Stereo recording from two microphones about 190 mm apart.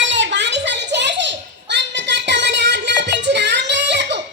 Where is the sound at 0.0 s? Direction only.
70° right (ahead or behind).